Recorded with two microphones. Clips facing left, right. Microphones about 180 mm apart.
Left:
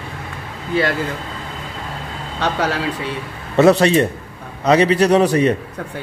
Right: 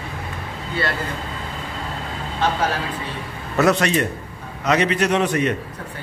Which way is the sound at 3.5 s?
30° left (ahead or behind).